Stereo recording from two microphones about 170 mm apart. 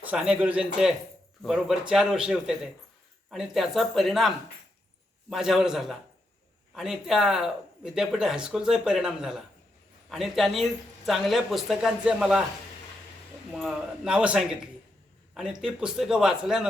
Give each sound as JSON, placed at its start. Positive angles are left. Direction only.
{"t": 0.0, "sound": "a man's voice", "side_deg": -5}
{"t": 13.5, "sound": "speech", "side_deg": 0}